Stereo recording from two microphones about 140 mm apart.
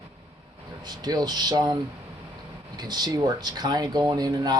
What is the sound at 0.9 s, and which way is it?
Speech, 30° right (ahead or behind).